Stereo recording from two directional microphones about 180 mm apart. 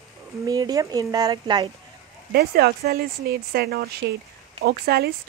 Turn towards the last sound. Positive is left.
turn(degrees=-60)  # may be behind; listen again after turning